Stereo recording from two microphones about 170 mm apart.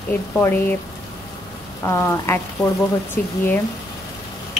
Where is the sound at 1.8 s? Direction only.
15° left (ahead or behind).